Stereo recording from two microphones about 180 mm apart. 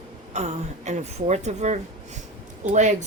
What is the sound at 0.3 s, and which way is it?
A woman's voice, 40° right (ahead or behind).